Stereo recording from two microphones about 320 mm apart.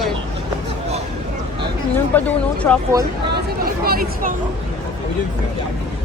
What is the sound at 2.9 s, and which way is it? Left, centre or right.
Speech, centre.